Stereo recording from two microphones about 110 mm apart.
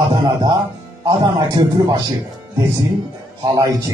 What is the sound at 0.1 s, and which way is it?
A man's voice, 40° right (ahead or behind).